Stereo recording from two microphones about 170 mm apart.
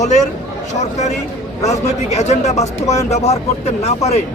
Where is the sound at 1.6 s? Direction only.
40° left (ahead or behind).